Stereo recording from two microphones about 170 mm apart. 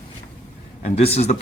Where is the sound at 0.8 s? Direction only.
40° left (ahead or behind).